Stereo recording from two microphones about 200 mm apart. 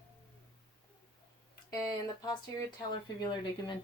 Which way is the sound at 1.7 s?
15° left (ahead or behind).